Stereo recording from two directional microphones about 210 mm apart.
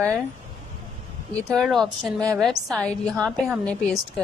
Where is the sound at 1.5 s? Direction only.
Centre (ahead or behind).